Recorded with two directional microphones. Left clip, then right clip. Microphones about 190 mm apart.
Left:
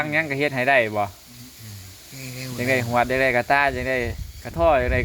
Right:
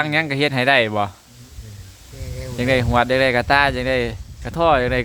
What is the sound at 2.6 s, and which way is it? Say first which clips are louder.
Speech: right 3 dB; 25° right (ahead or behind).